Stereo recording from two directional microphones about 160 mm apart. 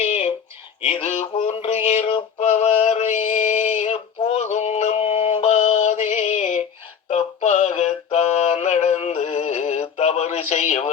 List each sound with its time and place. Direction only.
0.0 s a sound: 50° left (ahead or behind)
2.4 s mantra: 45° left (ahead or behind)
7.1 s male singing: 45° left (ahead or behind)
10.0 s radio: 45° left (ahead or behind)